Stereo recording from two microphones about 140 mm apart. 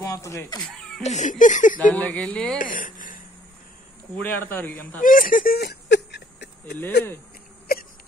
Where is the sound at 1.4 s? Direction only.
65° left (ahead or behind).